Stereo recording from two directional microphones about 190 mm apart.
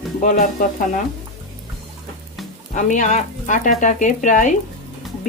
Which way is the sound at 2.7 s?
40° left (ahead or behind).